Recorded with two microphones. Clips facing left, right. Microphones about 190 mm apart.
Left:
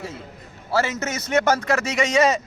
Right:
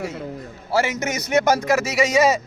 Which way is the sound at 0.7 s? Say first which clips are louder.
Right 2 dB; 15° right (ahead or behind).